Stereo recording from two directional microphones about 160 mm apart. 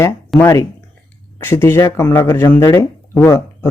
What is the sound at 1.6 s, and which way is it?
Speech, 15° left (ahead or behind).